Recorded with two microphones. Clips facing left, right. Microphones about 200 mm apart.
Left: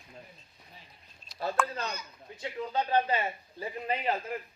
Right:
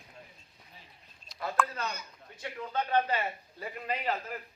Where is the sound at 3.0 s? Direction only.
25° left (ahead or behind).